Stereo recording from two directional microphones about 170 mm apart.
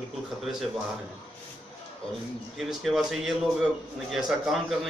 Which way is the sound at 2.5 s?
Centre (ahead or behind).